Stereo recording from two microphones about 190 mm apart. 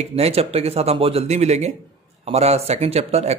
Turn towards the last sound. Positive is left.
turn(degrees=-35)  # may be behind; listen again after turning